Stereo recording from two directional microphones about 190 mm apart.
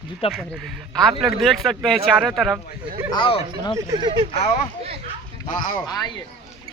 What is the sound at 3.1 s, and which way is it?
Speech, 25° left (ahead or behind).